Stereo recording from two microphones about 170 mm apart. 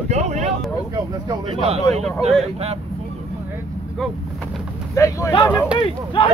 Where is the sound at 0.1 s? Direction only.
40° right (ahead or behind).